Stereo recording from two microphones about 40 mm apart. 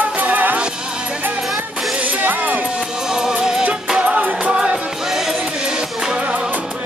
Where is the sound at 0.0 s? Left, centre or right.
Right.